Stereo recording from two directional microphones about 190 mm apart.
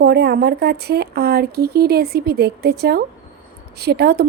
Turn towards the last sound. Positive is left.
turn(degrees=-55)  # may be behind; listen again after turning